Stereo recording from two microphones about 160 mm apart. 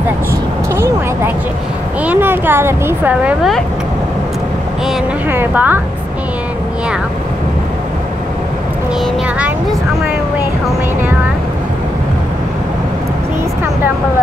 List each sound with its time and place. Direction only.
0.7 s a sound: 15° right (ahead or behind)
2.0 s a woman's voice: 15° right (ahead or behind)
5.3 s a woman's voice: 10° right (ahead or behind)